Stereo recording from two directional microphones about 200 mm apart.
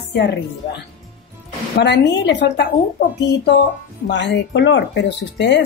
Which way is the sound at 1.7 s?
55° left (ahead or behind).